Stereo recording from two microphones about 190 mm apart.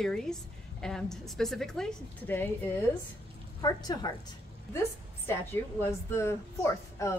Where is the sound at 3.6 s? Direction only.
20° left (ahead or behind).